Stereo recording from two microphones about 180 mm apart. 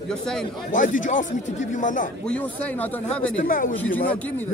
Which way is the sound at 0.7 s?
45° left (ahead or behind).